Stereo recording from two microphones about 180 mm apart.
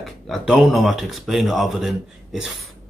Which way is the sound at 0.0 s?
Centre (ahead or behind).